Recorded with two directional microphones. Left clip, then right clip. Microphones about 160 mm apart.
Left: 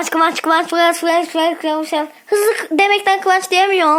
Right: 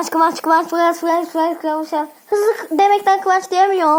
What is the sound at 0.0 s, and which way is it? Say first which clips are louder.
Speech: left 1 dB; 30° left (ahead or behind).